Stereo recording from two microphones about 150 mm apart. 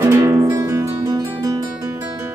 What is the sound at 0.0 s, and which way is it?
Music, 15° right (ahead or behind).